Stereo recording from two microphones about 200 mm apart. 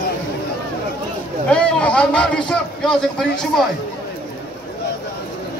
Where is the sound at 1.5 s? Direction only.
5° left (ahead or behind).